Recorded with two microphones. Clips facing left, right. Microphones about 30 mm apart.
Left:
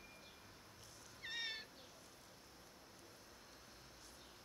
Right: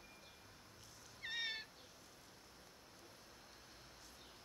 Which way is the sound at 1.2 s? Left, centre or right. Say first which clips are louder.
Right 2 dB; centre.